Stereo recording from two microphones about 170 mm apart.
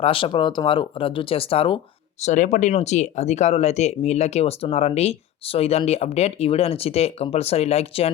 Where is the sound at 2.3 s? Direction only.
45° left (ahead or behind).